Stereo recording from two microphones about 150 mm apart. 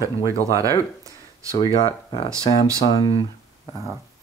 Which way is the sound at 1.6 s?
25° left (ahead or behind).